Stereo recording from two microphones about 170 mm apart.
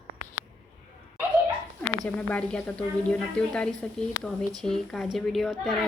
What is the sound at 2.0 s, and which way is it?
A woman's voice, 5° left (ahead or behind).